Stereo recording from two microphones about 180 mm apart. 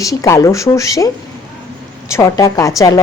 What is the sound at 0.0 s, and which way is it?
A woman's voice, 20° left (ahead or behind).